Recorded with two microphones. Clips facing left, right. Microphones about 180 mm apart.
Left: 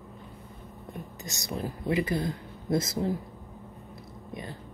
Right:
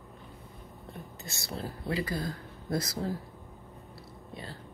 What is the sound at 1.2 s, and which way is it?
Speech, 15° left (ahead or behind).